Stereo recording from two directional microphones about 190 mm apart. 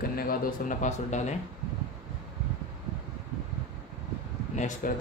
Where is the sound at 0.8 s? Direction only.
40° left (ahead or behind).